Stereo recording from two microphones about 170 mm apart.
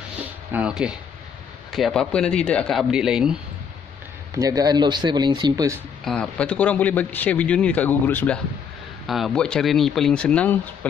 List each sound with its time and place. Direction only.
0.5 s speech: 5° right (ahead or behind)
4.3 s speech: 20° right (ahead or behind)
6.0 s a man's voice: 5° left (ahead or behind)
9.0 s speech: centre (ahead or behind)